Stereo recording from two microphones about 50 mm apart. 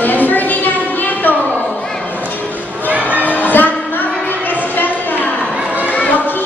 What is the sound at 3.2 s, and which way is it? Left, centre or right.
Music, left.